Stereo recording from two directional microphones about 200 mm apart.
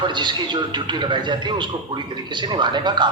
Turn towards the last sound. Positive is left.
turn(degrees=-20)  # may be behind; listen again after turning